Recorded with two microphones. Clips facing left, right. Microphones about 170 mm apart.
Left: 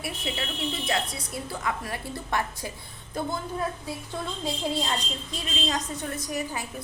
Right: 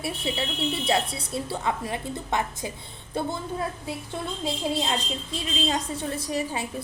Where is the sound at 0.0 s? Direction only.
30° right (ahead or behind).